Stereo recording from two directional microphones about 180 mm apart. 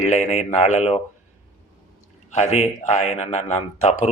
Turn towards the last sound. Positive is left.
turn(degrees=40)  # may be behind; listen again after turning